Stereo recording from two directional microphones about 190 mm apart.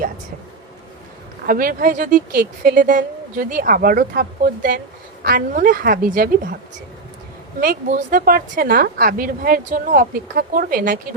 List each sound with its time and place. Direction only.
1.5 s a woman's voice: 50° right (ahead or behind)
7.6 s a woman's voice: 45° right (ahead or behind)